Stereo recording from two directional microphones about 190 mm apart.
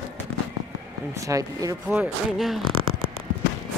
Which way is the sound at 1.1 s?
15° right (ahead or behind).